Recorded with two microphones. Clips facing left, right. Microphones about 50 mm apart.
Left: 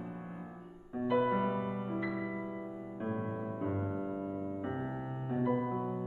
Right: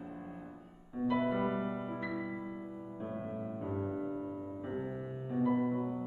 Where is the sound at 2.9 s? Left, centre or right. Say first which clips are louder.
Left 3 dB; left.